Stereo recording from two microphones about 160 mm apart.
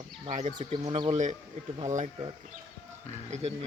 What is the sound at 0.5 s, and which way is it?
Speech, 30° right (ahead or behind).